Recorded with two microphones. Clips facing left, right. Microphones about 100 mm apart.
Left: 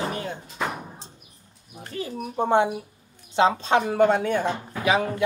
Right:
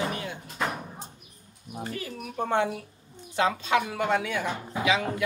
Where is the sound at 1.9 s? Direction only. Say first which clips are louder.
Left 9 dB; 30° left (ahead or behind).